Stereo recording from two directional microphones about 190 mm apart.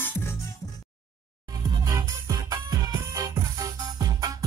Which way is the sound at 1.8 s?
20° right (ahead or behind).